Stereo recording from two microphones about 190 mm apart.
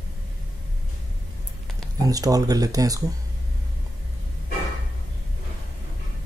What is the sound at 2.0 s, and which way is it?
Speech, 20° right (ahead or behind).